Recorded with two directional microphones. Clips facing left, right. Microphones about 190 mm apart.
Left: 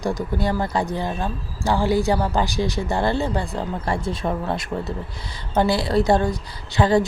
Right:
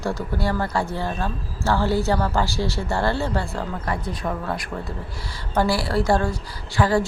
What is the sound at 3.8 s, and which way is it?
A woman's voice, 25° left (ahead or behind).